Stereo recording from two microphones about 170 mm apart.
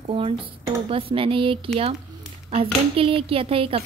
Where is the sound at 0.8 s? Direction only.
30° right (ahead or behind).